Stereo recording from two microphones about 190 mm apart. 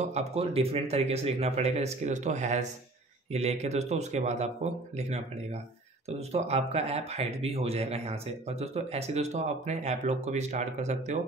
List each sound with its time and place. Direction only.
0.0 s speech: 35° right (ahead or behind)